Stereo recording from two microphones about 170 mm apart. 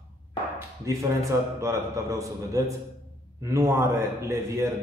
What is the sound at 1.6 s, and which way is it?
A man's voice, 15° right (ahead or behind).